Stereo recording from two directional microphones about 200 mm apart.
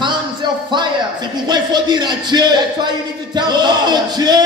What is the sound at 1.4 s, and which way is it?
A man's voice, 20° right (ahead or behind).